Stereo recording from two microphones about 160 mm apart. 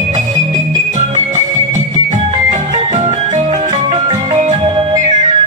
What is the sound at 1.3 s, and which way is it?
Music, 55° right (ahead or behind).